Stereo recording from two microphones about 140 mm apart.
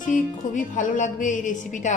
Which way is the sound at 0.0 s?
70° left (ahead or behind).